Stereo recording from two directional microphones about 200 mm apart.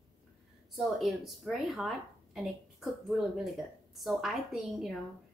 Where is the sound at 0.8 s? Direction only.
Centre (ahead or behind).